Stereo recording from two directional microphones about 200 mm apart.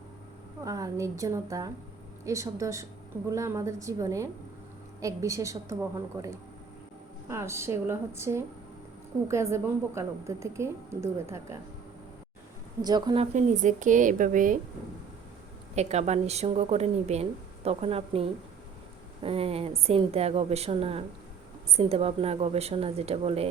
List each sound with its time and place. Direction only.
0.6 s a woman's voice: 15° right (ahead or behind)
12.8 s a woman's voice: 20° right (ahead or behind)
13.3 s speech: 40° right (ahead or behind)
15.7 s a woman's voice: 35° right (ahead or behind)